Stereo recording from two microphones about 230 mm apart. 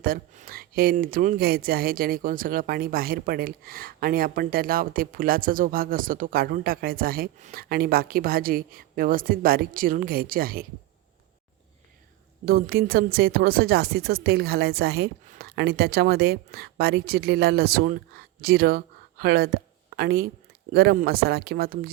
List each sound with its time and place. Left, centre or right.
0.0 s speech: right
12.5 s speech: right